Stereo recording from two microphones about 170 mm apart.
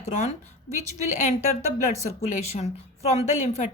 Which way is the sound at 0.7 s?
45° left (ahead or behind).